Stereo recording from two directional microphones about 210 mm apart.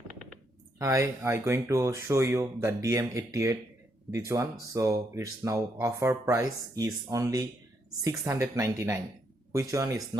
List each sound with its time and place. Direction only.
0.8 s speech: 15° right (ahead or behind)